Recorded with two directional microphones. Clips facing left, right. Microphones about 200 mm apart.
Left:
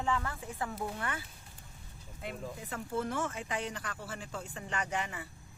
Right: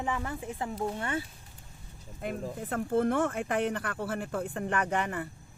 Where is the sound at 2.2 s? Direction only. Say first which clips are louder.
Right 6 dB; 50° right (ahead or behind).